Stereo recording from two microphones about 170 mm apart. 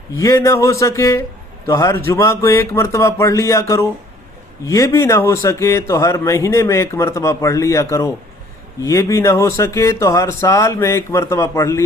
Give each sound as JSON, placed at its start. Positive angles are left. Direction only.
{"t": 0.4, "sound": "a man's voice", "side_deg": 20}